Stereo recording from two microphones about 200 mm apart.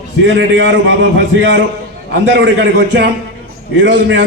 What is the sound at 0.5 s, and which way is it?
A man's voice, 65° right (ahead or behind).